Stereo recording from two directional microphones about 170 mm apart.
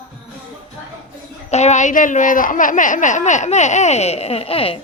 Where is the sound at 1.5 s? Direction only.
40° left (ahead or behind).